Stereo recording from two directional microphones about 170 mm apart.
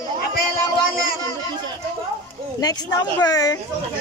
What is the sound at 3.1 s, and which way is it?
Speech, 20° left (ahead or behind).